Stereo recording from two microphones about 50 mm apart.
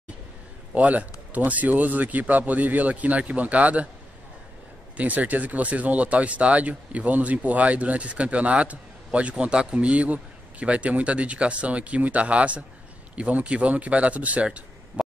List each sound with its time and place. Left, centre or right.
0.7 s a man's voice: right
4.9 s speech: right
15.0 s a sound: right